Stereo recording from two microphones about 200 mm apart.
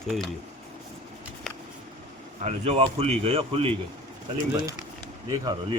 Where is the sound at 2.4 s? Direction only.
30° right (ahead or behind).